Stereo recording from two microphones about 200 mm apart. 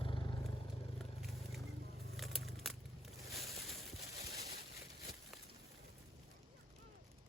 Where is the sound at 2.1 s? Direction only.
Centre (ahead or behind).